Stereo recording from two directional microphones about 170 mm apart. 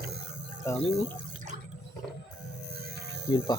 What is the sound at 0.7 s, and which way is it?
Speech, 15° left (ahead or behind).